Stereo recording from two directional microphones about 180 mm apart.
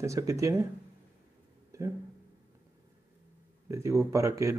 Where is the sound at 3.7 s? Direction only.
15° right (ahead or behind).